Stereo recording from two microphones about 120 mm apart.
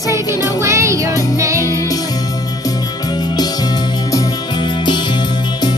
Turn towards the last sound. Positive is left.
turn(degrees=40)  # may be behind; listen again after turning